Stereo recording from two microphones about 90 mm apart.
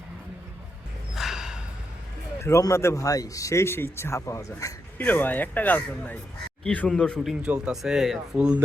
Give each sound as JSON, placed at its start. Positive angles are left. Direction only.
{"t": 1.1, "sound": "a sound", "side_deg": -5}
{"t": 2.4, "sound": "speech", "side_deg": 35}
{"t": 4.9, "sound": "speech", "side_deg": 20}
{"t": 7.2, "sound": "speech", "side_deg": -10}